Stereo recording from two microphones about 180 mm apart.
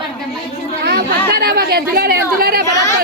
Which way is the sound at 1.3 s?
60° right (ahead or behind).